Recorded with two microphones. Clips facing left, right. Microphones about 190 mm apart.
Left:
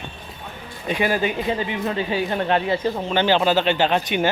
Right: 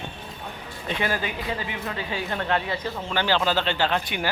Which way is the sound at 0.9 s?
15° left (ahead or behind).